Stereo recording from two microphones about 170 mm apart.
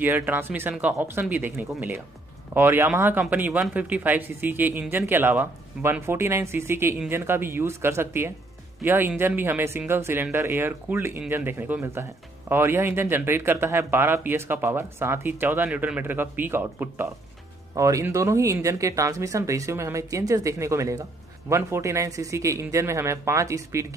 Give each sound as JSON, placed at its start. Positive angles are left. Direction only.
{"t": 0.0, "sound": "speech", "side_deg": -10}